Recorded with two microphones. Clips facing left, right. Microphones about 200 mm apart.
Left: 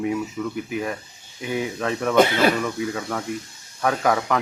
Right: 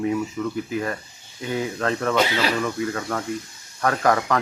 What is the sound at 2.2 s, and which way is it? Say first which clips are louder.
Speech: left 8 dB; 50° left (ahead or behind).